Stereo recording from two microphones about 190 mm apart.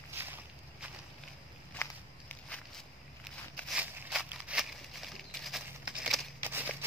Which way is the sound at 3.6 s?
5° right (ahead or behind).